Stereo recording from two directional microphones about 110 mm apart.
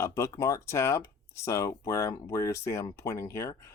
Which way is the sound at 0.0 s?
25° left (ahead or behind).